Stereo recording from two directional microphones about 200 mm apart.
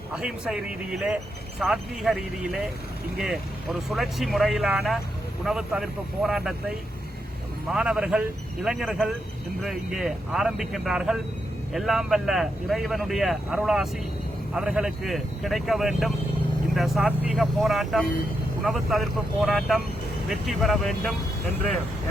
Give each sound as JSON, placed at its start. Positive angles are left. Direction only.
{"t": 0.1, "sound": "speech", "side_deg": -5}